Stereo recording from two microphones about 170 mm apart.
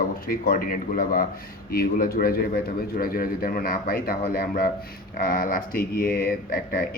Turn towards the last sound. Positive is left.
turn(degrees=55)  # may be behind; listen again after turning